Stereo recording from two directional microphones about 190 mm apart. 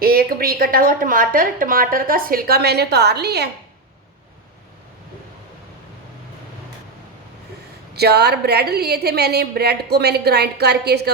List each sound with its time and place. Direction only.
0.0 s speech: 50° right (ahead or behind)
7.9 s a woman's voice: 60° right (ahead or behind)